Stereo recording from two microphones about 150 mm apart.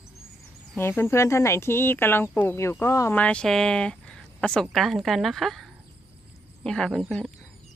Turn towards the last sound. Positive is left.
turn(degrees=5)  # may be behind; listen again after turning